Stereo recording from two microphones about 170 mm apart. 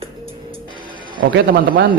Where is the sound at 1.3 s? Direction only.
60° right (ahead or behind).